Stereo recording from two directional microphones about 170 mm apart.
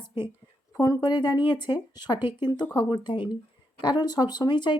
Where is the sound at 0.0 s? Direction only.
30° left (ahead or behind).